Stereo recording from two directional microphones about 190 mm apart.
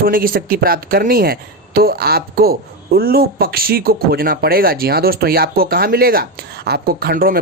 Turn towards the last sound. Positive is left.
turn(degrees=-50)  # may be behind; listen again after turning